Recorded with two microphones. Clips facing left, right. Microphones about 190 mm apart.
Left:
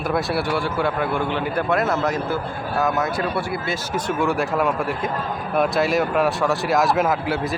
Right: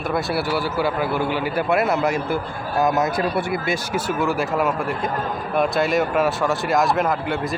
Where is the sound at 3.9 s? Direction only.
5° right (ahead or behind).